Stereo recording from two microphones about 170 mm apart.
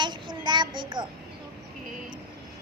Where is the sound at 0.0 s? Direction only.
25° right (ahead or behind).